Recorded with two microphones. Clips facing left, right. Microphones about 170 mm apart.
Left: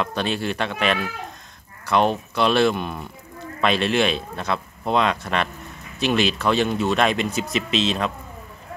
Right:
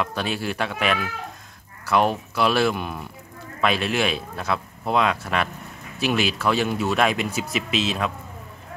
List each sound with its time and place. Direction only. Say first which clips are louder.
0.0 s speech: left 2 dB; 5° right (ahead or behind)